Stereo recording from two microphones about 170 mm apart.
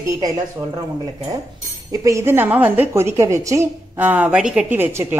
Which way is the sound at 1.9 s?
20° right (ahead or behind).